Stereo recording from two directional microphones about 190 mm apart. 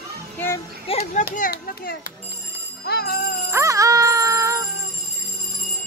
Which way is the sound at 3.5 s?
15° right (ahead or behind).